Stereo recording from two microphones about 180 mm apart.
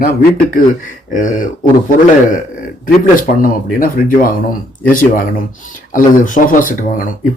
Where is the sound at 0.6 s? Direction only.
45° left (ahead or behind).